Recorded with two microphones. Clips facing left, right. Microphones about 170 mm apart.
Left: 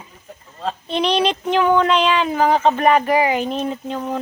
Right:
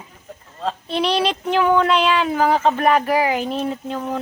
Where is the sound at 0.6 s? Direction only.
5° right (ahead or behind).